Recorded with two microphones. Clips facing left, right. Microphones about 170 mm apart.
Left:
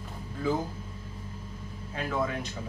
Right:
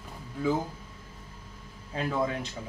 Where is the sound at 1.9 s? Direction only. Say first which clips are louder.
Right 1 dB; 30° right (ahead or behind).